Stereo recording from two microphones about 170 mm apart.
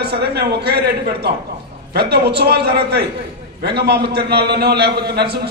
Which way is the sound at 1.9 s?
75° right (ahead or behind).